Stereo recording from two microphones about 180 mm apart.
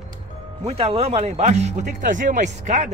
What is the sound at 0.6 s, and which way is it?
Speech, 35° right (ahead or behind).